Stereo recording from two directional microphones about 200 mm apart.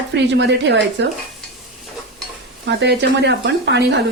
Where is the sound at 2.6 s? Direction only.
60° right (ahead or behind).